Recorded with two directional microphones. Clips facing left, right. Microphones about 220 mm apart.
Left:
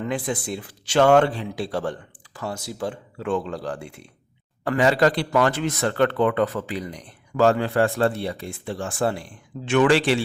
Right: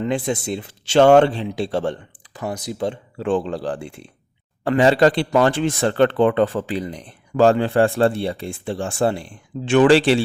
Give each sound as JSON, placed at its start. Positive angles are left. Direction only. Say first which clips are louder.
{"t": 0.0, "sound": "speech", "louder": "right 4 dB", "side_deg": -25}